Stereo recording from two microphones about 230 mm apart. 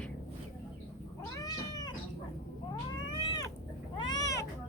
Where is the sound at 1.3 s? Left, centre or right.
Centre.